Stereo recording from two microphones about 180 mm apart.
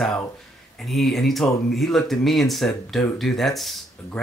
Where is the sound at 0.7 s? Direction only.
Centre (ahead or behind).